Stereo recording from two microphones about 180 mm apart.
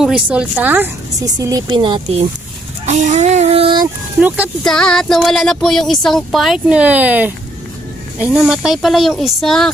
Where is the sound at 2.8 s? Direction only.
40° right (ahead or behind).